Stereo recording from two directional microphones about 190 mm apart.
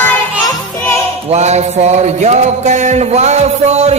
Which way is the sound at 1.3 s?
35° right (ahead or behind).